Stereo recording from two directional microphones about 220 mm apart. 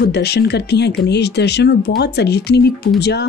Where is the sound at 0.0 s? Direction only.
50° left (ahead or behind).